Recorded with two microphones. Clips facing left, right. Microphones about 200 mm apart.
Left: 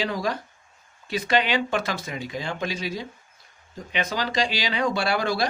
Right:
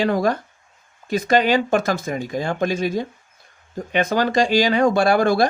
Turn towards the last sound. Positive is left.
turn(degrees=-50)  # may be behind; listen again after turning